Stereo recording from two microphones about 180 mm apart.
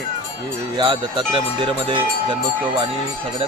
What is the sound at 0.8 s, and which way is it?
Speech, 25° right (ahead or behind).